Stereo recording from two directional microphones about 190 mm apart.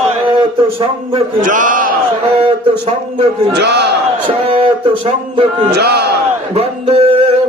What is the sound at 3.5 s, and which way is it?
Speech, 60° right (ahead or behind).